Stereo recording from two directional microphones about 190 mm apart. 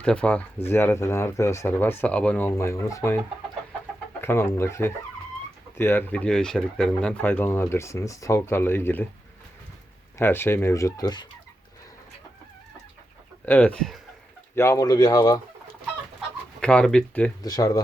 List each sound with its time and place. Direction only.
0.0 s speech: 5° left (ahead or behind)
4.2 s speech: 15° left (ahead or behind)
10.2 s speech: 10° left (ahead or behind)
13.4 s speech: 10° left (ahead or behind)
14.5 s speech: 15° left (ahead or behind)
16.6 s speech: 5° left (ahead or behind)
17.4 s speech: 20° left (ahead or behind)